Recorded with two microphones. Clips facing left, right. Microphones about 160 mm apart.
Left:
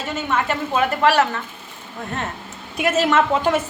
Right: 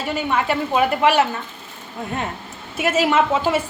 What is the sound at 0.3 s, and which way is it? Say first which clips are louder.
A woman's voice: right 1 dB; 10° right (ahead or behind).